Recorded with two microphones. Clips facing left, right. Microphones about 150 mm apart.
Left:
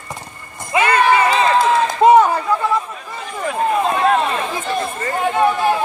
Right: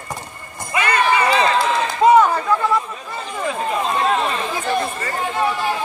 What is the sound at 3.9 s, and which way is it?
Run, 55° left (ahead or behind).